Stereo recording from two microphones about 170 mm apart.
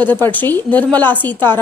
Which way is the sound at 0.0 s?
10° left (ahead or behind).